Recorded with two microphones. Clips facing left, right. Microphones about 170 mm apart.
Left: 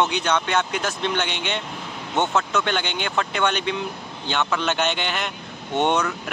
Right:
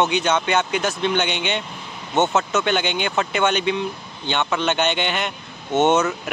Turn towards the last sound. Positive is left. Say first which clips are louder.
# right 4 dB
turn(degrees=-5)  # may be behind; listen again after turning